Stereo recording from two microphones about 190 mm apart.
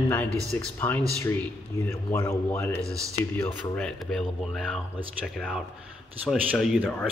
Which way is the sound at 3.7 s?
5° left (ahead or behind).